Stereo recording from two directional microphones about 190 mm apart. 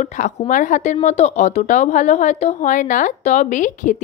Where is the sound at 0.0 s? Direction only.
40° left (ahead or behind).